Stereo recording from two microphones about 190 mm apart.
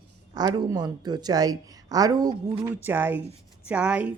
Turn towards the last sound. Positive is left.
turn(degrees=-5)  # may be behind; listen again after turning